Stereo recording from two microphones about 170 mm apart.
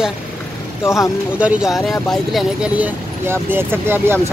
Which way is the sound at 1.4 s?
Centre (ahead or behind).